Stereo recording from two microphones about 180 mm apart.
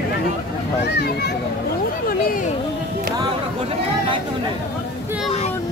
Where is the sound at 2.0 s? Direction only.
50° left (ahead or behind).